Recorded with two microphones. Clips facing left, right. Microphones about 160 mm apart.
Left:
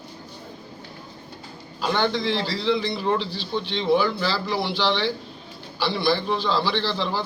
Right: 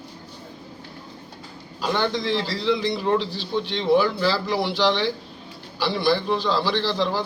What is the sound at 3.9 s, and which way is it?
A man's voice, 5° right (ahead or behind).